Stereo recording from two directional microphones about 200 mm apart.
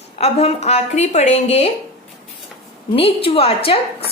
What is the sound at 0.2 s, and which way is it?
A woman's voice, 35° left (ahead or behind).